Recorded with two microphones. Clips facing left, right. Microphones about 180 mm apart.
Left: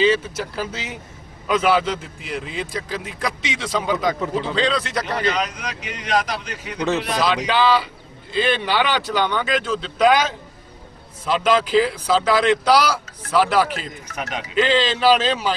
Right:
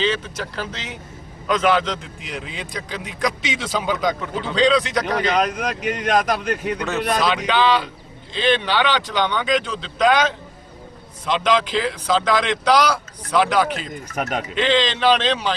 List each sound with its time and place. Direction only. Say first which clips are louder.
0.0 s a man's voice: left 4 dB; 10° left (ahead or behind)
5.3 s speech: right 5 dB; 55° right (ahead or behind)
6.7 s a man's voice: even; centre (ahead or behind)
14.2 s speech: right 4 dB; 50° right (ahead or behind)
14.5 s speech: left 2 dB; 5° left (ahead or behind)